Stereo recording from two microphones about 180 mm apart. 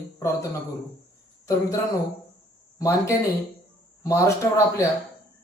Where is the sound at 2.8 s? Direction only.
15° left (ahead or behind).